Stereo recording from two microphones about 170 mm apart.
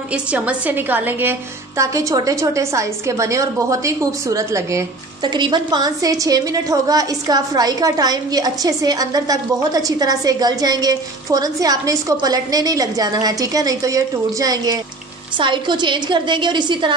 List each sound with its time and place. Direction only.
0.1 s a woman's voice: 5° right (ahead or behind); by 16.9 s 25° right (ahead or behind)